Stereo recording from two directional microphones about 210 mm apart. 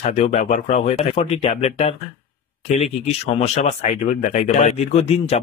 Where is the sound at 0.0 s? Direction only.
30° left (ahead or behind).